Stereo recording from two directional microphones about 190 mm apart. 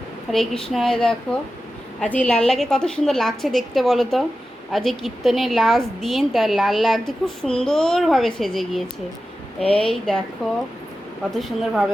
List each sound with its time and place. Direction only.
0.3 s a woman's voice: centre (ahead or behind)